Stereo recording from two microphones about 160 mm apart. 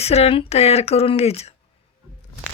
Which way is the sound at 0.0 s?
40° left (ahead or behind).